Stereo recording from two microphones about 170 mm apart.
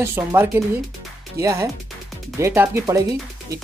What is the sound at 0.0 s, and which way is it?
Speech, 15° right (ahead or behind).